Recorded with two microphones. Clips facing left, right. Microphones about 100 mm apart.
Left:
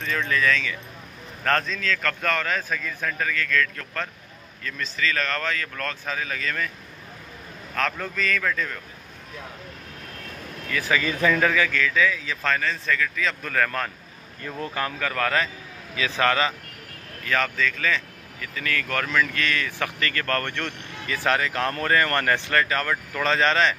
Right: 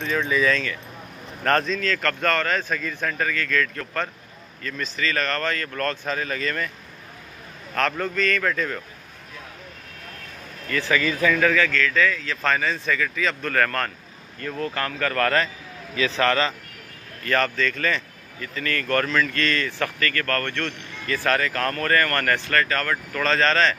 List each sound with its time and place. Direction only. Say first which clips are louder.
0.1 s a man's voice: right 2 dB; 10° right (ahead or behind)
7.7 s a man's voice: right 3 dB; centre (ahead or behind)
10.7 s speech: right 2 dB; 15° left (ahead or behind)
12.4 s a man's voice: right 2 dB; 5° right (ahead or behind)
14.4 s a man's voice: right 2 dB; 15° left (ahead or behind)
20.0 s speech: even; 20° left (ahead or behind)